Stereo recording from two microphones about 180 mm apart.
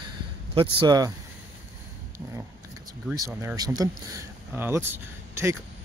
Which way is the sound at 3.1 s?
20° right (ahead or behind).